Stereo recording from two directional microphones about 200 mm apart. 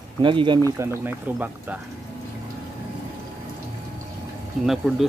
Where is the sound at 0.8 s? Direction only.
10° right (ahead or behind).